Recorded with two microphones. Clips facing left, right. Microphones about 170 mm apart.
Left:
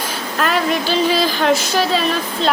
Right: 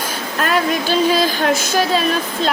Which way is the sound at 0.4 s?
45° right (ahead or behind).